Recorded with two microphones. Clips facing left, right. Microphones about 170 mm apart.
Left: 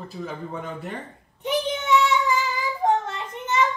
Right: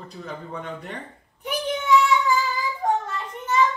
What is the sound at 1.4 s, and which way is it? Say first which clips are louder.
Child singing: left 1 dB; 20° left (ahead or behind).